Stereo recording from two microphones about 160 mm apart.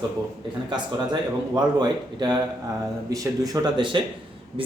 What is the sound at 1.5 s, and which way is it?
Speech, 25° right (ahead or behind).